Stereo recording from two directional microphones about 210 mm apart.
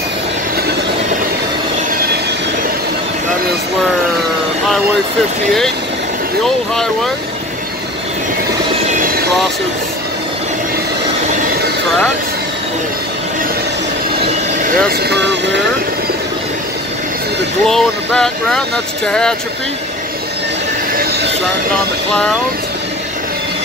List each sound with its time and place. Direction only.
6.4 s speech: centre (ahead or behind)
14.9 s speech: 50° right (ahead or behind)
17.6 s speech: centre (ahead or behind)
20.9 s vehicle: 45° right (ahead or behind)